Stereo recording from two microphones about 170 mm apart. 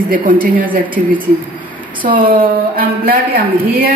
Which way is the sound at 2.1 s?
55° right (ahead or behind).